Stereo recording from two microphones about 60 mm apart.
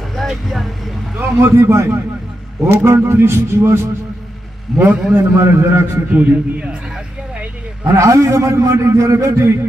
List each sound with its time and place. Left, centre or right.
0.2 s speech: centre
1.2 s a man's voice: right
4.7 s a man's voice: centre
5.1 s a man's voice: right
6.1 s a man's voice: right
7.9 s a man's voice: right